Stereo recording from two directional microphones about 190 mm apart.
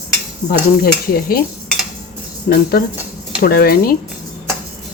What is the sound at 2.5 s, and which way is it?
Speech, 50° left (ahead or behind).